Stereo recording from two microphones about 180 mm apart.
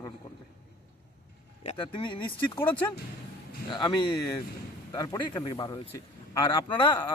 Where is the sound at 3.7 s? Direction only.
25° left (ahead or behind).